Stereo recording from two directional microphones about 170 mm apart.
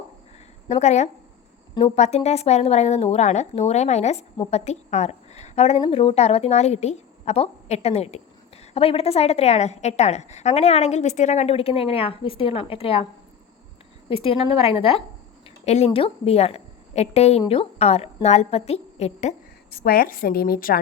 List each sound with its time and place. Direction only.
0.7 s a woman's voice: 40° left (ahead or behind)
14.1 s a woman's voice: 35° left (ahead or behind)
19.7 s a woman's voice: 60° left (ahead or behind)